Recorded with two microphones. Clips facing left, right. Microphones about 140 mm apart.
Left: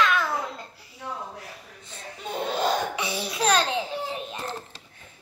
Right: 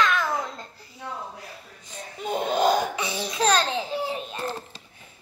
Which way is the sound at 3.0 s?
5° left (ahead or behind).